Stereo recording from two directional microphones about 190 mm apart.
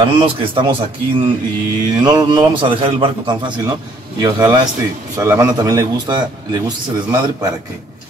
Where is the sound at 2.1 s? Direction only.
20° right (ahead or behind).